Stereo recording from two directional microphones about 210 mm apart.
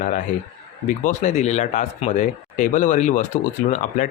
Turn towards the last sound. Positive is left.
turn(degrees=35)  # may be behind; listen again after turning